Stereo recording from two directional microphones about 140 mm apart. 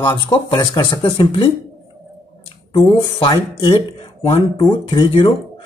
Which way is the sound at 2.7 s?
40° left (ahead or behind).